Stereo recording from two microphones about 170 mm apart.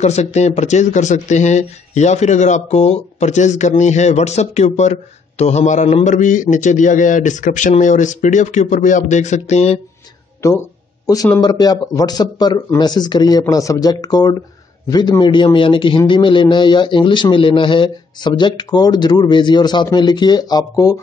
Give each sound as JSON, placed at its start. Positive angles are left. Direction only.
{"t": 0.0, "sound": "speech", "side_deg": 40}
{"t": 10.4, "sound": "a man's voice", "side_deg": 15}